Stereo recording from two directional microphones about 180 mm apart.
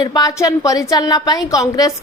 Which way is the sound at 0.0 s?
20° left (ahead or behind).